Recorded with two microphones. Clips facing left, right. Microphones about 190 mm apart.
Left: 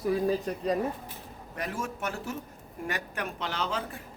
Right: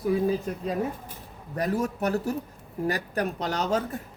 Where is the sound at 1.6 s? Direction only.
40° right (ahead or behind).